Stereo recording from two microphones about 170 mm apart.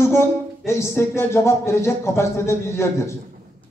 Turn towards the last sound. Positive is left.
turn(degrees=15)  # may be behind; listen again after turning